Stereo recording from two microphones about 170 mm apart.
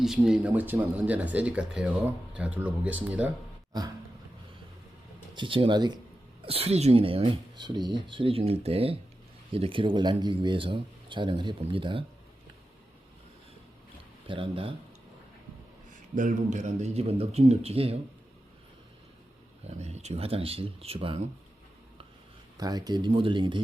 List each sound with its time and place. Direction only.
0.0 s speech: 5° right (ahead or behind)
5.3 s speech: 30° right (ahead or behind)
14.3 s speech: 30° right (ahead or behind)
16.1 s speech: 45° right (ahead or behind)
19.6 s speech: 40° right (ahead or behind)
22.5 s speech: 20° right (ahead or behind)